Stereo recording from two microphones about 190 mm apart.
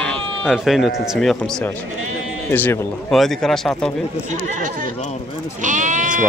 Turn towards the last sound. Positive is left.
turn(degrees=-40)  # may be behind; listen again after turning